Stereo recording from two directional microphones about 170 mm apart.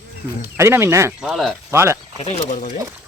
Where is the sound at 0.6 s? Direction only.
15° right (ahead or behind).